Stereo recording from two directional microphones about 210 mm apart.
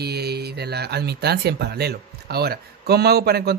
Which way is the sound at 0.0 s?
50° right (ahead or behind).